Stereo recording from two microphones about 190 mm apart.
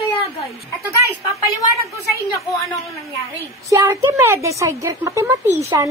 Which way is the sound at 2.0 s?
15° left (ahead or behind).